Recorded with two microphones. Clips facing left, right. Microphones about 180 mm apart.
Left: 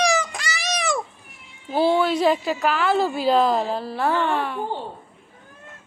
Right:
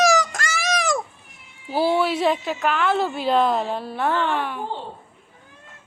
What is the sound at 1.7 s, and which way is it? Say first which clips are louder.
A woman's voice: left 1 dB; 5° right (ahead or behind).